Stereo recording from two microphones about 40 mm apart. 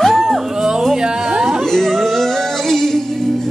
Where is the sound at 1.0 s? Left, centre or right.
Centre.